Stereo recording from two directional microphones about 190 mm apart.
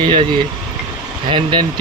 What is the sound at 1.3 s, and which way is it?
Speech, 25° right (ahead or behind).